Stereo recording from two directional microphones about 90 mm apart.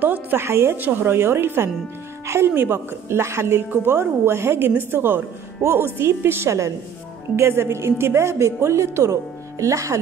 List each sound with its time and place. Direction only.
0.0 s a woman's voice: 20° right (ahead or behind)